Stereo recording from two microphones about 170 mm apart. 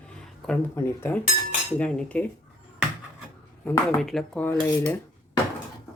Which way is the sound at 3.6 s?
5° left (ahead or behind).